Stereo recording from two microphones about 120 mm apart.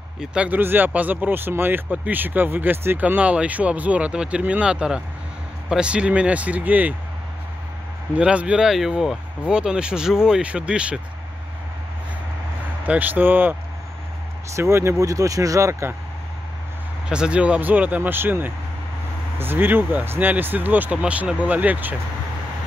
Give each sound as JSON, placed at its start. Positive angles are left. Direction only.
{"t": 0.2, "sound": "speech", "side_deg": -10}
{"t": 8.2, "sound": "speech", "side_deg": -10}
{"t": 12.8, "sound": "speech", "side_deg": -15}
{"t": 17.1, "sound": "speech", "side_deg": -10}